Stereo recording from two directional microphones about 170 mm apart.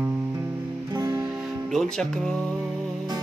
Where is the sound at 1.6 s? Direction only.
Centre (ahead or behind).